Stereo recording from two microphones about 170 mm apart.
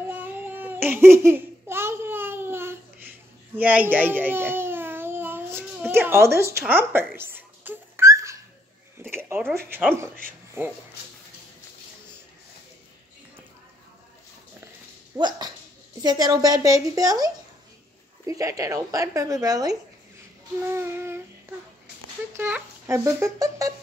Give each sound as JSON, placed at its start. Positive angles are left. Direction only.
{"t": 0.0, "sound": "a sound", "side_deg": -10}
{"t": 10.6, "sound": "a child's voice", "side_deg": -15}
{"t": 15.1, "sound": "speech", "side_deg": -25}
{"t": 20.6, "sound": "child singing", "side_deg": -15}
{"t": 22.4, "sound": "a child's voice", "side_deg": -15}